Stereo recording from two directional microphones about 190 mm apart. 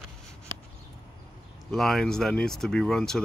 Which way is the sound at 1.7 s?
Centre (ahead or behind).